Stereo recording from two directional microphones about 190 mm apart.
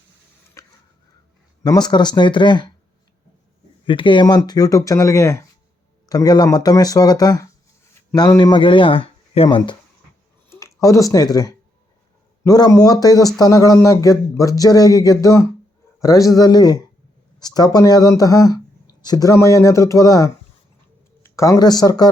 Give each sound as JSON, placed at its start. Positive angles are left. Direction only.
{"t": 0.6, "sound": "a sound", "side_deg": 15}
{"t": 1.6, "sound": "speech", "side_deg": 20}
{"t": 3.8, "sound": "a man's voice", "side_deg": 25}